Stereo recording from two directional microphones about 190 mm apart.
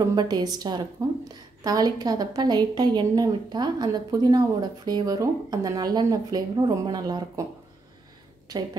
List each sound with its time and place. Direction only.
0.1 s a woman's voice: 20° right (ahead or behind)